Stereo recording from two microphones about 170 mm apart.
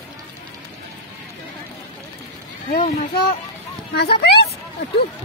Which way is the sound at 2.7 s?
60° left (ahead or behind).